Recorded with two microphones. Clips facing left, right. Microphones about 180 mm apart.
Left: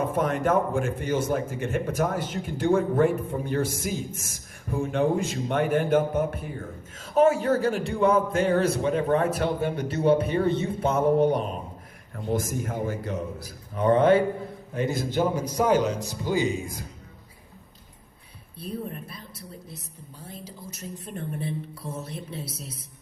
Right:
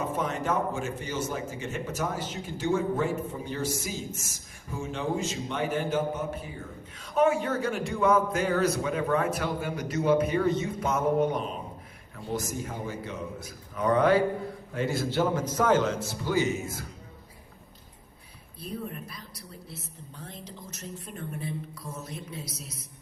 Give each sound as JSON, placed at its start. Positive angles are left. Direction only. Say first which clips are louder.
{"t": 0.0, "sound": "a man's voice", "louder": "left 5 dB", "side_deg": 55}
{"t": 12.1, "sound": "a man's voice", "louder": "left 5 dB", "side_deg": 50}
{"t": 18.6, "sound": "a woman's voice", "louder": "left 3 dB", "side_deg": 30}
{"t": 20.1, "sound": "a man's voice", "louder": "left 2 dB", "side_deg": 10}
{"t": 21.2, "sound": "a woman's voice", "louder": "left 4 dB", "side_deg": 30}